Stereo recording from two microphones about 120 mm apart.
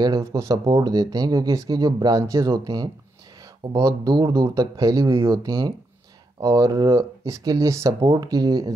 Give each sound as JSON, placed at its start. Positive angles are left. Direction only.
{"t": 0.0, "sound": "speech", "side_deg": -30}